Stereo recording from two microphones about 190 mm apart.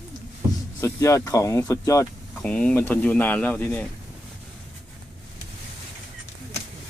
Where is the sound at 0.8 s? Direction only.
15° left (ahead or behind).